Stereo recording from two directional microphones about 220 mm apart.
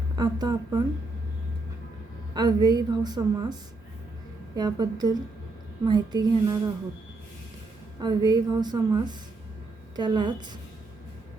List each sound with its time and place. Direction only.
0.2 s a woman's voice: 20° right (ahead or behind)
2.3 s a woman's voice: 20° right (ahead or behind)
4.5 s a woman's voice: 20° right (ahead or behind)
8.0 s a woman's voice: 20° right (ahead or behind)